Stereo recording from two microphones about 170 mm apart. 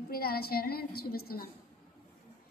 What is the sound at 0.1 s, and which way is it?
A woman's voice, 60° left (ahead or behind).